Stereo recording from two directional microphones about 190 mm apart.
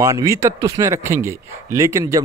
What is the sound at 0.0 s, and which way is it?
A man's voice, 15° right (ahead or behind).